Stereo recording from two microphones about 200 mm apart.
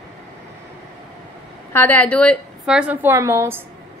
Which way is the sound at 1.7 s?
10° left (ahead or behind).